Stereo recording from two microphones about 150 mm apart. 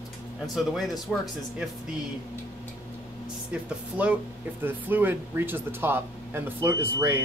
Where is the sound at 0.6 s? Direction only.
Centre (ahead or behind).